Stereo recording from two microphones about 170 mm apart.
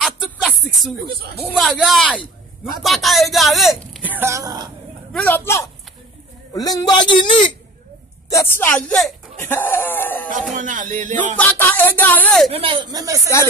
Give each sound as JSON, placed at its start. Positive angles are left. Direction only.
{"t": 0.0, "sound": "music", "side_deg": 0}
{"t": 1.6, "sound": "speech", "side_deg": 0}
{"t": 4.0, "sound": "speech", "side_deg": -10}
{"t": 5.1, "sound": "a man's voice", "side_deg": 10}
{"t": 8.3, "sound": "speech", "side_deg": 15}
{"t": 10.5, "sound": "music", "side_deg": -50}
{"t": 11.3, "sound": "speech", "side_deg": 10}
{"t": 12.5, "sound": "speech", "side_deg": -30}